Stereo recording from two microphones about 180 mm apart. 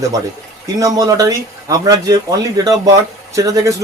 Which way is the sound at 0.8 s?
20° right (ahead or behind).